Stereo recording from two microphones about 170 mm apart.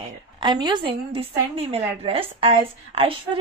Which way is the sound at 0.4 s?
25° right (ahead or behind).